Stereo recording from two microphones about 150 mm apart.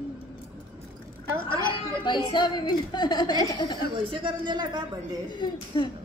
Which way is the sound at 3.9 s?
35° right (ahead or behind).